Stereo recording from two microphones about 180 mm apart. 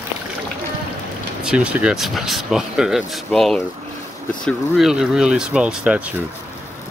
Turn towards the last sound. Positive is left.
turn(degrees=-5)  # may be behind; listen again after turning